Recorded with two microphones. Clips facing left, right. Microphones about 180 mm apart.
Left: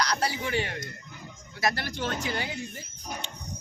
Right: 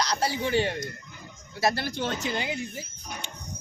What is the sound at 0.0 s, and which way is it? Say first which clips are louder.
Speech: right 2 dB; 25° right (ahead or behind).